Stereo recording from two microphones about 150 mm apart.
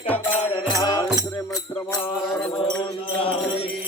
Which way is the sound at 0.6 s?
25° left (ahead or behind).